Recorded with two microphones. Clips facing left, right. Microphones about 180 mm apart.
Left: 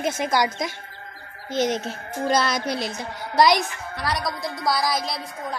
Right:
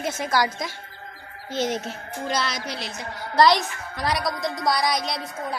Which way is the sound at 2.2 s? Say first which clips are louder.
Left 6 dB; 45° left (ahead or behind).